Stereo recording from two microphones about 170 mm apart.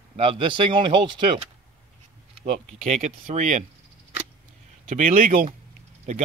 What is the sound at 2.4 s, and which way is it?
Speech, 45° right (ahead or behind).